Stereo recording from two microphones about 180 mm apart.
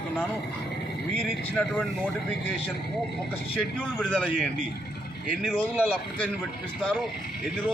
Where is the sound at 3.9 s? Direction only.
5° left (ahead or behind).